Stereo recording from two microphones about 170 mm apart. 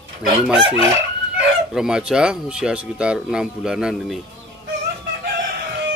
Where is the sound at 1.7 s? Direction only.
5° right (ahead or behind).